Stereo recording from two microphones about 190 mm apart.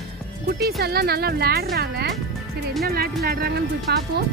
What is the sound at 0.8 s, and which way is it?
A woman's voice, 55° right (ahead or behind).